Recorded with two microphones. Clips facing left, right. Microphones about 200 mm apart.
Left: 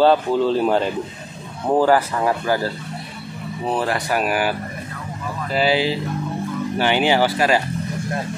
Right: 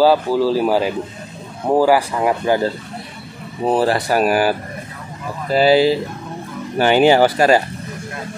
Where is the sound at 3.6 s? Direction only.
35° right (ahead or behind).